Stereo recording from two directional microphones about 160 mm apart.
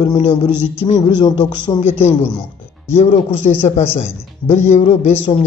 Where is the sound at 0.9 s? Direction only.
30° left (ahead or behind).